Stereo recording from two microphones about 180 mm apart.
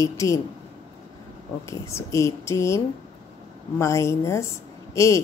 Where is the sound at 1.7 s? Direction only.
15° left (ahead or behind).